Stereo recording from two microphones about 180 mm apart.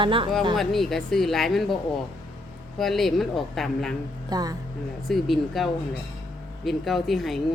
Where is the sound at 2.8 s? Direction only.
Centre (ahead or behind).